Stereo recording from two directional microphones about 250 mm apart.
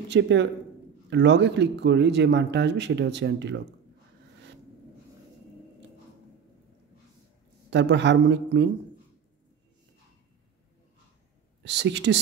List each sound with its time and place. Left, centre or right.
0.1 s speech: right
7.7 s speech: right
11.6 s speech: right